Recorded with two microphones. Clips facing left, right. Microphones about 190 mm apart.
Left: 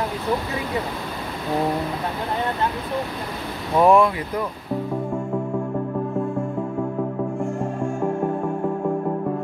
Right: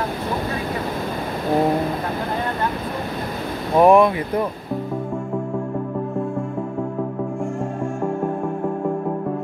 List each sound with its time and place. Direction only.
3.7 s speech: 15° right (ahead or behind)